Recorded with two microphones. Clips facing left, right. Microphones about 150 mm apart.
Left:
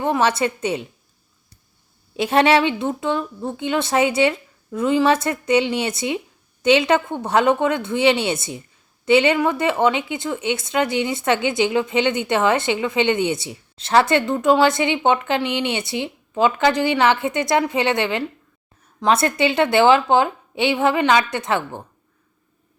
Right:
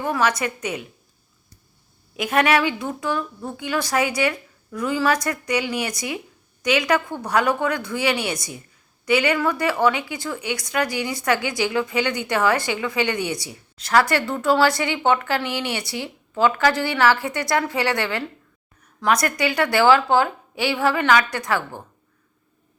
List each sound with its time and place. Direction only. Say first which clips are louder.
0.0 s speech: left 3 dB; 25° left (ahead or behind)
2.1 s speech: left 3 dB; 30° left (ahead or behind)